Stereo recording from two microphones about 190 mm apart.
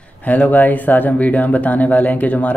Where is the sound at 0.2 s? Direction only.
10° left (ahead or behind).